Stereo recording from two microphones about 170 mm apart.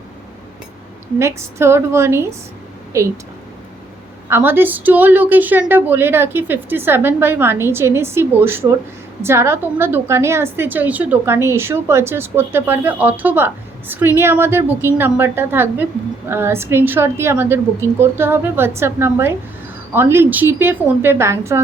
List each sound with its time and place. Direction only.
1.2 s a woman's voice: 15° right (ahead or behind)
4.3 s a woman's voice: 15° right (ahead or behind)